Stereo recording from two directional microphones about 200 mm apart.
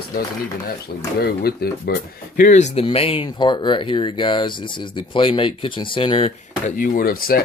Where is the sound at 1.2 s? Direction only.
50° left (ahead or behind); by 6.7 s 30° left (ahead or behind).